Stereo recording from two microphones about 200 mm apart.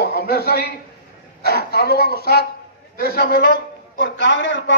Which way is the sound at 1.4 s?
50° left (ahead or behind).